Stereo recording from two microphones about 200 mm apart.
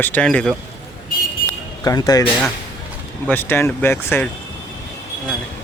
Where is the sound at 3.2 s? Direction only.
10° left (ahead or behind).